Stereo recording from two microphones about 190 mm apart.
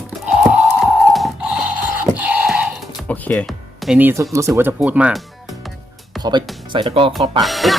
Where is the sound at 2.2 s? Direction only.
5° right (ahead or behind).